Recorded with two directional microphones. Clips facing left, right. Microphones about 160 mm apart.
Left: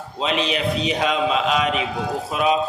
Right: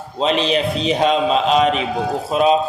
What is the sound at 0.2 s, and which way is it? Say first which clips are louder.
A man's voice: right 5 dB; 30° right (ahead or behind).